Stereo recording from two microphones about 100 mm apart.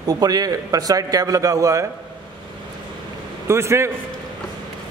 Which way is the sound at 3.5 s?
30° right (ahead or behind).